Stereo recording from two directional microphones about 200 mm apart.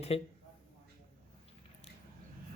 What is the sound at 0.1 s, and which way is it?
Speech, 30° left (ahead or behind).